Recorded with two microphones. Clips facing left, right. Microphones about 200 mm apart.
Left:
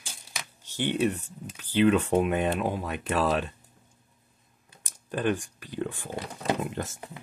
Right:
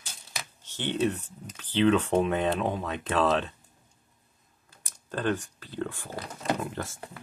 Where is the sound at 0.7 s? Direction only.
10° left (ahead or behind).